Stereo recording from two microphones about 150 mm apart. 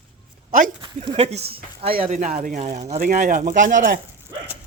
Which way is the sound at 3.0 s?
60° right (ahead or behind).